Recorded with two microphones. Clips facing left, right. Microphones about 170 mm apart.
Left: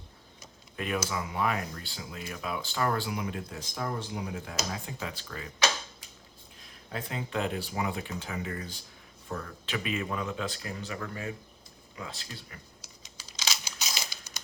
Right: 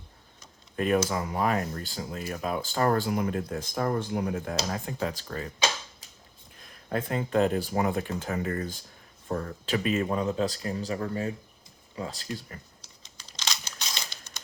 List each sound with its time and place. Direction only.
0.8 s speech: 45° right (ahead or behind)
6.6 s speech: 50° right (ahead or behind)
13.1 s crumpling: 5° left (ahead or behind)